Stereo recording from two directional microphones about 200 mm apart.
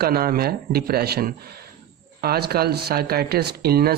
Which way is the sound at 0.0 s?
50° right (ahead or behind).